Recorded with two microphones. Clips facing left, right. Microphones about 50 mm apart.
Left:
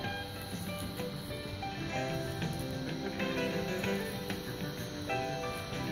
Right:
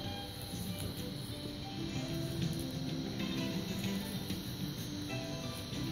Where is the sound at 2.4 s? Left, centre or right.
Left.